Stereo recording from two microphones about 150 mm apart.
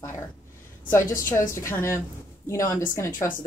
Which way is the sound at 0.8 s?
20° left (ahead or behind).